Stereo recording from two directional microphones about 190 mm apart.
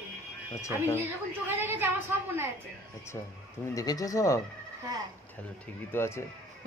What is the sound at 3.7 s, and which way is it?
Speech, 20° left (ahead or behind).